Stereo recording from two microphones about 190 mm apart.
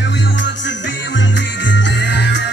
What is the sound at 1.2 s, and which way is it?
Music, 70° left (ahead or behind).